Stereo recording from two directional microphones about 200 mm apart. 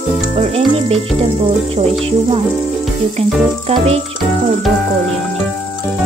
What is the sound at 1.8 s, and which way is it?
Stir, 30° right (ahead or behind).